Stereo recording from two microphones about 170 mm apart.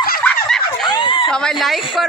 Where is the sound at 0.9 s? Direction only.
30° left (ahead or behind).